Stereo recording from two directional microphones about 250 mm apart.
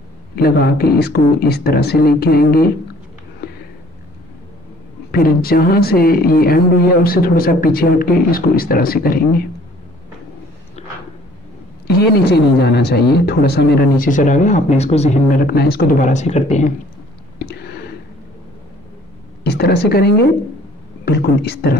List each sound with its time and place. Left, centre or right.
0.4 s speech: left
5.1 s speech: left
10.8 s a sound: left
12.3 s speech: left
17.5 s a sound: left
19.4 s speech: left